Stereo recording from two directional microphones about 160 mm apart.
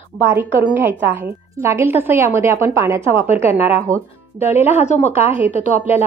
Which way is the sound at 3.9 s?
55° right (ahead or behind).